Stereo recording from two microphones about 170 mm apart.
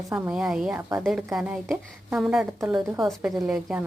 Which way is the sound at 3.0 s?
5° right (ahead or behind).